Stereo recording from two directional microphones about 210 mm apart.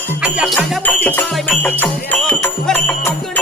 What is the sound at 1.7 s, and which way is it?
Music, 5° left (ahead or behind).